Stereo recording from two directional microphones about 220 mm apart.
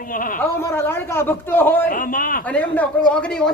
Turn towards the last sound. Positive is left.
turn(degrees=5)  # may be behind; listen again after turning